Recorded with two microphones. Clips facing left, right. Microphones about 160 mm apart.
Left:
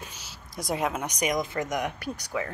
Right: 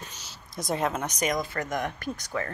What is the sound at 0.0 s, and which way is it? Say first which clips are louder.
A woman's voice: left 1 dB; 10° left (ahead or behind).